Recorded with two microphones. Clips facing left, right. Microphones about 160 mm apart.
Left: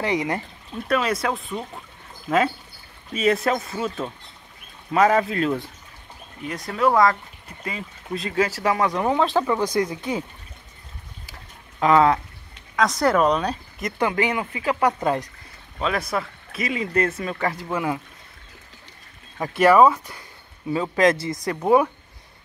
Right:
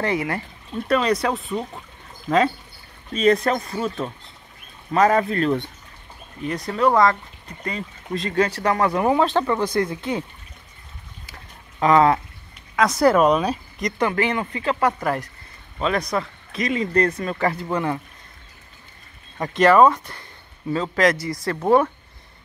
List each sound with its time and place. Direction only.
0.0 s speech: 20° left (ahead or behind)
0.8 s speech: centre (ahead or behind)
9.8 s speech: 15° left (ahead or behind)
11.8 s speech: centre (ahead or behind)
13.7 s speech: 5° left (ahead or behind)
14.0 s speech: 15° left (ahead or behind)
15.8 s speech: 5° left (ahead or behind)
19.3 s speech: 5° left (ahead or behind)